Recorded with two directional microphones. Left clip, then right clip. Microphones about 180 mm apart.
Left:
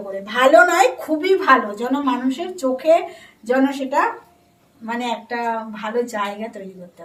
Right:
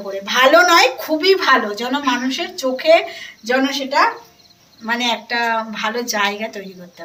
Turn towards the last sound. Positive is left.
turn(degrees=20)  # may be behind; listen again after turning